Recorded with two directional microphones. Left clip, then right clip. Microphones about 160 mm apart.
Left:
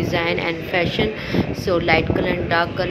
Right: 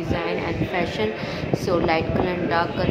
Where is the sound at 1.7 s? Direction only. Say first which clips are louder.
Left 4 dB; 15° left (ahead or behind).